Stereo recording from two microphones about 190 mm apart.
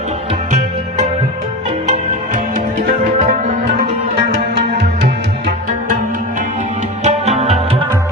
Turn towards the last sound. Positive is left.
turn(degrees=-30)  # may be behind; listen again after turning